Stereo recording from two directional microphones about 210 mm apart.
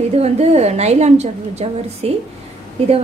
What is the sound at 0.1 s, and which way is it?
A woman's voice, 30° right (ahead or behind).